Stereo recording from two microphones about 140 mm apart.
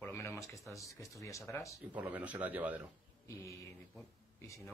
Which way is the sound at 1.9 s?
10° right (ahead or behind).